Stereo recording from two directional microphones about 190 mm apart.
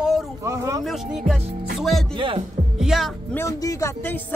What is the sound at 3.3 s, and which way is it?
Speech, 15° left (ahead or behind).